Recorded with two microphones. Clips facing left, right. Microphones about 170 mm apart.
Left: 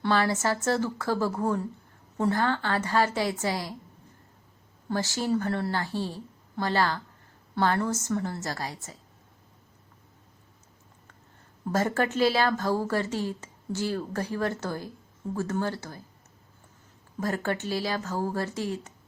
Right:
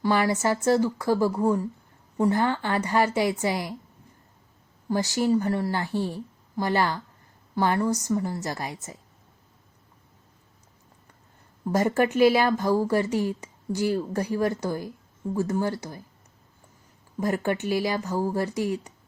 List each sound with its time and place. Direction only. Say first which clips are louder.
0.0 s a woman's voice: right 2 dB; 15° right (ahead or behind)
4.9 s a woman's voice: right 4 dB; 15° right (ahead or behind)
11.7 s a woman's voice: right 4 dB; 15° right (ahead or behind)
17.2 s a woman's voice: right 3 dB; 15° right (ahead or behind)